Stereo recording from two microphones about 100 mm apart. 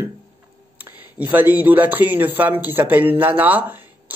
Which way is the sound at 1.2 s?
15° right (ahead or behind).